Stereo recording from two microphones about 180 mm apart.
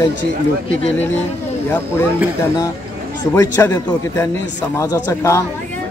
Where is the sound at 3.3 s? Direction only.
15° left (ahead or behind).